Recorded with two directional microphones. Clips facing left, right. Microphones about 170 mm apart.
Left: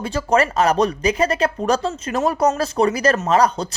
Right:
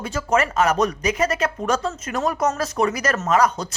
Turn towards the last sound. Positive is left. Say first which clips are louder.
# left 2 dB
turn(degrees=30)  # may be behind; listen again after turning